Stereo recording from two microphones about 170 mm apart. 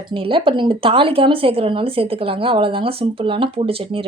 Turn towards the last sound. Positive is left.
turn(degrees=-35)  # may be behind; listen again after turning